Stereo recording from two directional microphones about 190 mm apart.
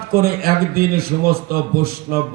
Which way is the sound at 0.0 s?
50° right (ahead or behind).